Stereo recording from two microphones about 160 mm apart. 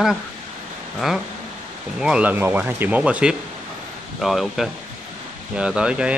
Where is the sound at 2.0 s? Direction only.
5° right (ahead or behind).